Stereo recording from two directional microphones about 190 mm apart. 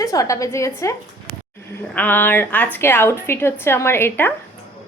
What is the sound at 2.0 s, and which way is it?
Speech, 10° left (ahead or behind).